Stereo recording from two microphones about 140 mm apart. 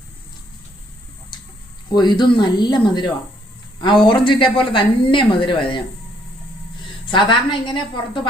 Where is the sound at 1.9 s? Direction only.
30° left (ahead or behind).